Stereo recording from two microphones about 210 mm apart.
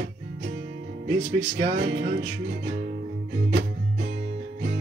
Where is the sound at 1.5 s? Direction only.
45° right (ahead or behind).